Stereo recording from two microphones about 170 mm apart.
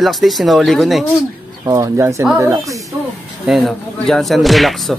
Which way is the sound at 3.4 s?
Centre (ahead or behind).